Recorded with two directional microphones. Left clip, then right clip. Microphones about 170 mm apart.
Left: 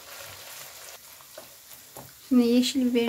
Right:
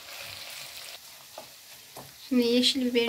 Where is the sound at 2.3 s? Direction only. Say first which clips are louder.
Left 1 dB; 45° left (ahead or behind).